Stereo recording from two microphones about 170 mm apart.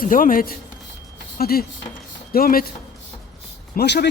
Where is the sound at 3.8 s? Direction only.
80° left.